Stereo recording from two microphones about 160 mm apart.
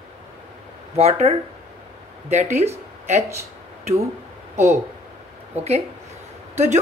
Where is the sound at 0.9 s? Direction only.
40° right (ahead or behind).